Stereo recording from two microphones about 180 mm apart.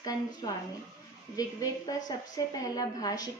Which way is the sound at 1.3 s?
20° left (ahead or behind).